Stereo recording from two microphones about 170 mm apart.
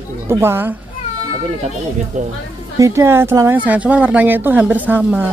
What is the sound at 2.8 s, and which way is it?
Speech, 20° right (ahead or behind).